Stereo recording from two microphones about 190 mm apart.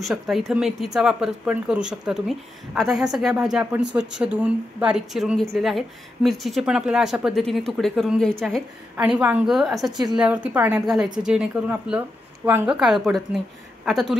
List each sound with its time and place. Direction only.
0.0 s a woman's voice: centre (ahead or behind)